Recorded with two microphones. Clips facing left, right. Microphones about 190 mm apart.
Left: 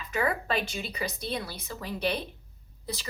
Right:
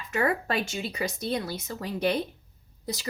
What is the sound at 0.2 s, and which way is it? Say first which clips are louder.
A woman's voice: right 2 dB; 50° right (ahead or behind).